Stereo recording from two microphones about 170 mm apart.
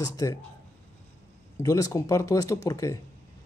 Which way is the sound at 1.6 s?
20° left (ahead or behind).